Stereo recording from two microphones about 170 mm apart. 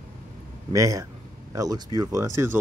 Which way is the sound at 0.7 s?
20° right (ahead or behind).